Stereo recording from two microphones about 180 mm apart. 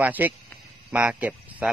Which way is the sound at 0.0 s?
10° right (ahead or behind).